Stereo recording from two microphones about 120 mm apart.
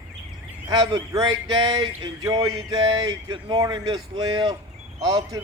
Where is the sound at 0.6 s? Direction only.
35° right (ahead or behind).